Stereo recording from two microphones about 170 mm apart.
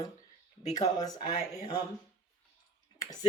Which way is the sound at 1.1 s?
20° left (ahead or behind).